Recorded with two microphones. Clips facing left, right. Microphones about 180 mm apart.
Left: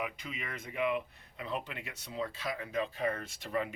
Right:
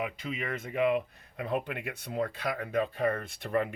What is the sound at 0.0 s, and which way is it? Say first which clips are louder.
Speech: right 5 dB; 45° right (ahead or behind).